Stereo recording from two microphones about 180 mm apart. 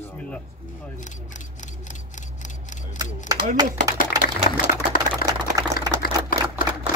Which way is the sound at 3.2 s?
20° right (ahead or behind).